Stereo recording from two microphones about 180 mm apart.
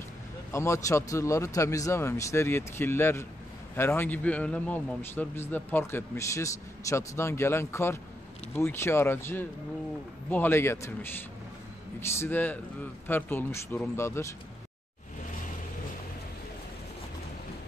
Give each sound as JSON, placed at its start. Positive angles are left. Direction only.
{"t": 0.5, "sound": "a man's voice", "side_deg": 15}
{"t": 12.2, "sound": "a man's voice", "side_deg": 10}